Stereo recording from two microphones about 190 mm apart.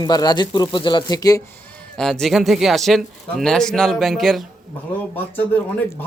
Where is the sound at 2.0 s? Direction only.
Centre (ahead or behind).